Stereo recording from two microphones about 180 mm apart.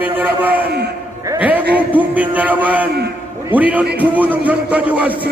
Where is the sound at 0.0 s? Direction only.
10° right (ahead or behind).